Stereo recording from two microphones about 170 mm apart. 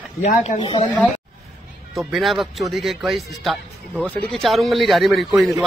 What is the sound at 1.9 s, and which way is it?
Speech, centre (ahead or behind).